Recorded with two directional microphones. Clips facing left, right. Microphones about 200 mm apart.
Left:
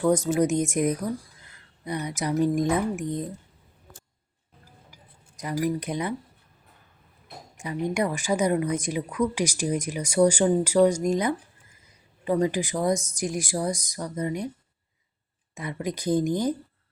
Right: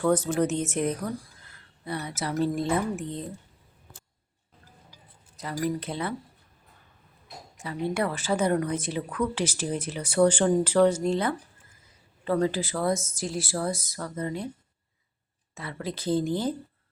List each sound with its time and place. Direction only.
0.0 s speech: 10° left (ahead or behind)
5.4 s speech: 15° left (ahead or behind)
7.5 s speech: 15° left (ahead or behind)
15.5 s speech: 15° left (ahead or behind)